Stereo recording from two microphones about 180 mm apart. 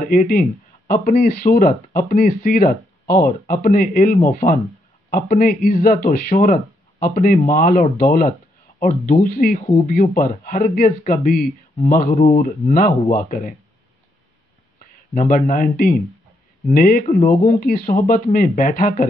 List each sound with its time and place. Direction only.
0.0 s speech: 50° left (ahead or behind)
9.6 s speech: 30° left (ahead or behind)
9.8 s speech: 45° left (ahead or behind)
12.2 s speech: 35° left (ahead or behind)
15.1 s speech: 50° left (ahead or behind)
17.0 s speech: 35° left (ahead or behind)
17.5 s speech: 50° left (ahead or behind)